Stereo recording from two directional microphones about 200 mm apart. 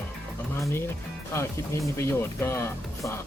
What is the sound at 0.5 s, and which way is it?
Speech, 15° left (ahead or behind).